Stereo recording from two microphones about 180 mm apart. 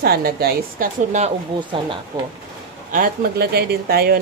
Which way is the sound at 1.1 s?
40° right (ahead or behind).